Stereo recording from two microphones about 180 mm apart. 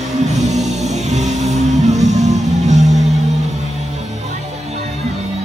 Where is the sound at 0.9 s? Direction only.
40° right (ahead or behind).